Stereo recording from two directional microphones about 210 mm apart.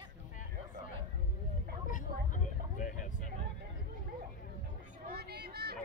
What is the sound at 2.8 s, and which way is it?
Vehicle, 40° left (ahead or behind).